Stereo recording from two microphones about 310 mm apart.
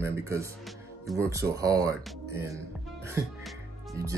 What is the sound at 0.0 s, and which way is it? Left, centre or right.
Speech, centre.